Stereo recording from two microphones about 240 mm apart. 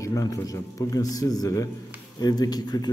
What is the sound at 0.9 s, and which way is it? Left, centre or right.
A man's voice, centre.